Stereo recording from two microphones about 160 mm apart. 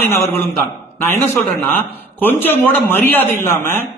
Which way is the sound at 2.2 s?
10° left (ahead or behind).